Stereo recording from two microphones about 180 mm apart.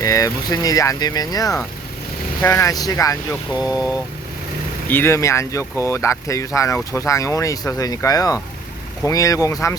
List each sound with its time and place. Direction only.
0.0 s speech: 20° left (ahead or behind)